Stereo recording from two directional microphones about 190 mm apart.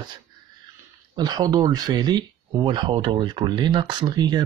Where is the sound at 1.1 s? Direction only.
20° right (ahead or behind).